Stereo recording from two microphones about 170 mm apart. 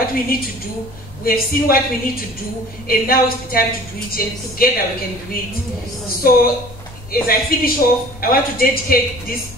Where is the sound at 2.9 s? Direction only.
60° left (ahead or behind).